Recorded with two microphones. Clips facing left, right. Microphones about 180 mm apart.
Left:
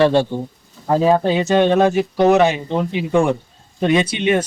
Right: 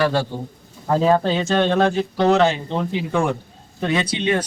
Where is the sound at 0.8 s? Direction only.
10° left (ahead or behind).